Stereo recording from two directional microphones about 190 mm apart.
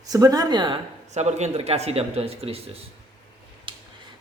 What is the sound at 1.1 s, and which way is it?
Speech, 35° right (ahead or behind).